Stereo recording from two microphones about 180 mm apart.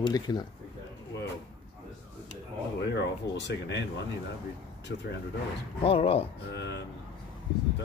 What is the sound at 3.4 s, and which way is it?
Speech, 75° left (ahead or behind).